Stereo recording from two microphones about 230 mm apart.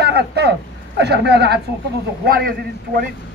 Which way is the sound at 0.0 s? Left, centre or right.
Right.